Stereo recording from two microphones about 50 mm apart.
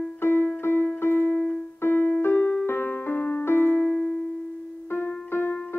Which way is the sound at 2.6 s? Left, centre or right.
Left.